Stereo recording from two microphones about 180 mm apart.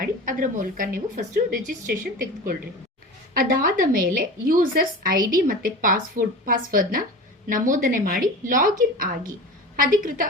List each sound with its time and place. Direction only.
0.0 s a woman's voice: 50° right (ahead or behind)
3.3 s a woman's voice: 50° right (ahead or behind)